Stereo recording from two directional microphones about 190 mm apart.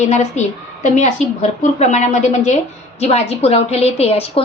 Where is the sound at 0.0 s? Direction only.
35° left (ahead or behind).